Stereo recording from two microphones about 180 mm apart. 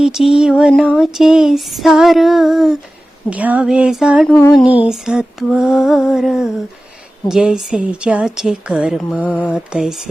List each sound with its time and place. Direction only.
0.0 s female singing: centre (ahead or behind)
4.6 s female singing: 30° left (ahead or behind)
4.9 s female singing: 5° right (ahead or behind)
9.0 s female singing: 5° left (ahead or behind)
9.5 s female singing: 5° right (ahead or behind)